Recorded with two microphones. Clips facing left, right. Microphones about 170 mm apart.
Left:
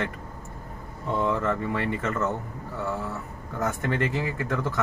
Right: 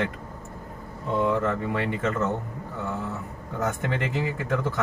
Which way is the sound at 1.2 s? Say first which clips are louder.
Right 1 dB; 15° right (ahead or behind).